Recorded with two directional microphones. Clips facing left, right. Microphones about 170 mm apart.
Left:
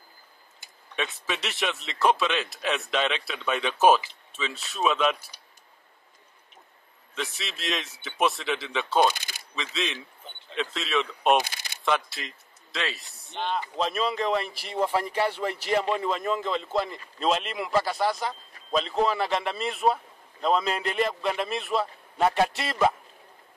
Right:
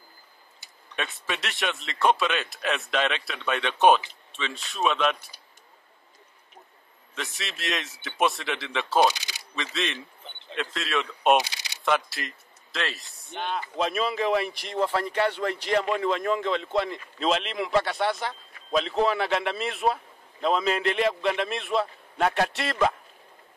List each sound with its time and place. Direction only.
0.9 s speech: centre (ahead or behind)
7.2 s speech: centre (ahead or behind)
9.1 s shuffling cards: 50° left (ahead or behind)
9.6 s speech: centre (ahead or behind)
11.4 s coin: 50° left (ahead or behind)
11.8 s speech: centre (ahead or behind)